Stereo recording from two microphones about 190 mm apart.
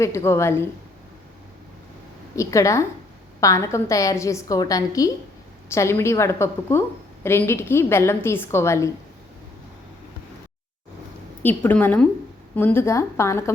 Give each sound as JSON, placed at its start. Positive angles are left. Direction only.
{"t": 0.0, "sound": "a woman's voice", "side_deg": 15}
{"t": 2.3, "sound": "a woman's voice", "side_deg": 15}
{"t": 11.4, "sound": "a woman's voice", "side_deg": 10}